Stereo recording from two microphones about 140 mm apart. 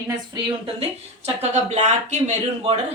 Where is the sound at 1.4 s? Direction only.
55° right (ahead or behind).